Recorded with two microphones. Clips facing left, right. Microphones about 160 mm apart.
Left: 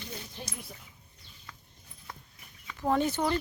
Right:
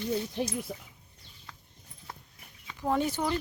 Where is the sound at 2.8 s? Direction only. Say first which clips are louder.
Left 1 dB; 10° right (ahead or behind).